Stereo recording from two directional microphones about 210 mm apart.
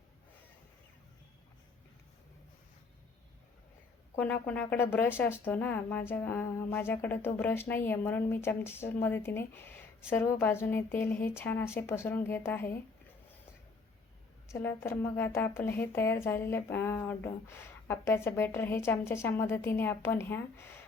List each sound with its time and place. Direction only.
4.1 s speech: 10° left (ahead or behind)
14.5 s speech: 10° left (ahead or behind)